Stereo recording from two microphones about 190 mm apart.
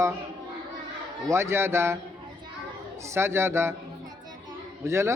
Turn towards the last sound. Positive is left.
turn(degrees=-15)  # may be behind; listen again after turning